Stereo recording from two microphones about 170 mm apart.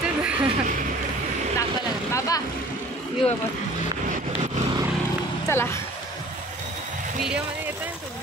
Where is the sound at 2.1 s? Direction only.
20° left (ahead or behind).